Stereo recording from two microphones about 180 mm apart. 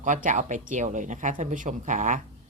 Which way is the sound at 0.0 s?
45° right (ahead or behind).